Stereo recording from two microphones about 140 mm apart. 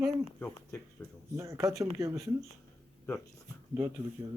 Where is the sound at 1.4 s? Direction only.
25° right (ahead or behind).